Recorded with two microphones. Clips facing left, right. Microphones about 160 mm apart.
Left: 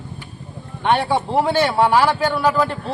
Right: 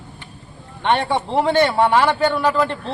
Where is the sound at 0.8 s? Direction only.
5° left (ahead or behind).